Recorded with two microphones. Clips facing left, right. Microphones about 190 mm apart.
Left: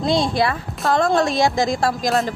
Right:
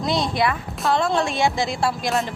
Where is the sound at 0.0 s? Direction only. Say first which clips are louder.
Left 3 dB; 30° left (ahead or behind).